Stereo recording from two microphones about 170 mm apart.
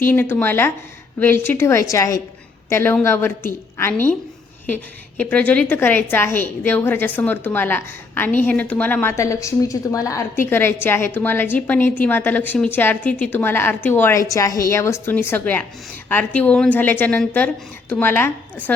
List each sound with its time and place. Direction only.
0.0 s a woman's voice: 10° left (ahead or behind)